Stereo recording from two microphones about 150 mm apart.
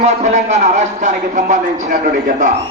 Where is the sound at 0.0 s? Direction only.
50° right (ahead or behind).